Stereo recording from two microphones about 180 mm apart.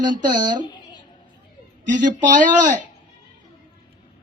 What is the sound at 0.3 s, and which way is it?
Speech, 25° right (ahead or behind).